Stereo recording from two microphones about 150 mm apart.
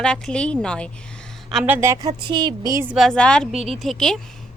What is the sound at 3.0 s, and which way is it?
A woman's voice, 5° left (ahead or behind).